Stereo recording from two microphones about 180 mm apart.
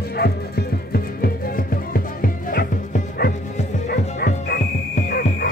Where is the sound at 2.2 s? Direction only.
55° left (ahead or behind).